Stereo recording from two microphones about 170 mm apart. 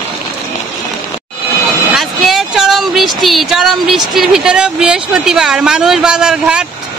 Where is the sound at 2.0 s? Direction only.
Centre (ahead or behind).